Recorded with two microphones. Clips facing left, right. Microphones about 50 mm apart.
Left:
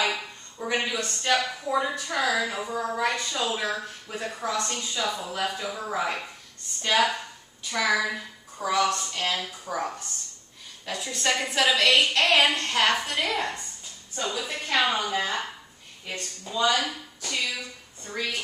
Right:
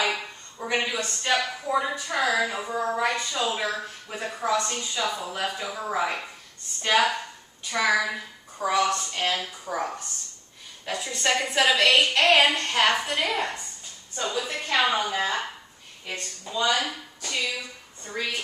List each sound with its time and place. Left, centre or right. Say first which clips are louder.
0.0 s a woman's voice: right 1 dB; centre
10.9 s speech: right 1 dB; centre